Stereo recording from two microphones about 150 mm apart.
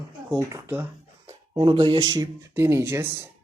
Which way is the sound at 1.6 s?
35° right (ahead or behind).